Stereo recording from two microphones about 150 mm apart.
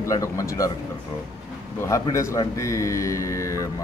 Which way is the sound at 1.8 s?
20° left (ahead or behind).